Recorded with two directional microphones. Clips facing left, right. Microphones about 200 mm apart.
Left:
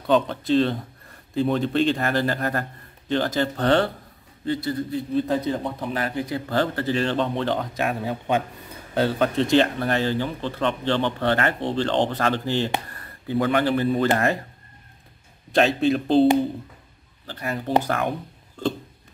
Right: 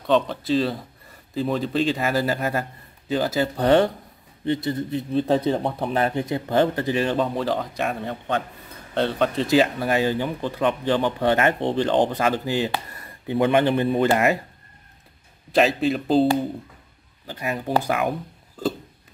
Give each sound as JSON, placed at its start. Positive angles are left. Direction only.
{"t": 0.0, "sound": "a man's voice", "side_deg": 0}
{"t": 12.8, "sound": "a sound", "side_deg": -10}
{"t": 13.4, "sound": "a man's voice", "side_deg": -20}
{"t": 15.5, "sound": "a man's voice", "side_deg": 0}
{"t": 17.3, "sound": "a man's voice", "side_deg": -15}